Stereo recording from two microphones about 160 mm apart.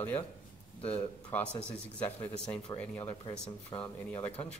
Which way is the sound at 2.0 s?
5° left (ahead or behind).